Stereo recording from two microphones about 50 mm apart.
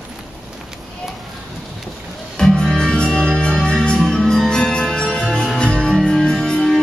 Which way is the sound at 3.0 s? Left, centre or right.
Centre.